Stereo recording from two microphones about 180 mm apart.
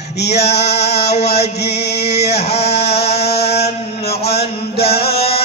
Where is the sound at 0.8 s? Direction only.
35° left (ahead or behind).